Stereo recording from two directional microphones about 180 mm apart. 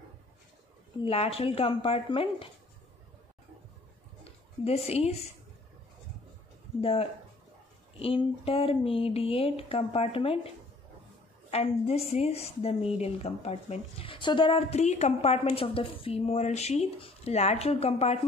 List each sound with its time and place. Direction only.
1.0 s a woman's voice: 35° left (ahead or behind)
4.2 s a sound: 35° left (ahead or behind)
6.8 s a woman's voice: 30° left (ahead or behind)
11.5 s a woman's voice: 35° left (ahead or behind)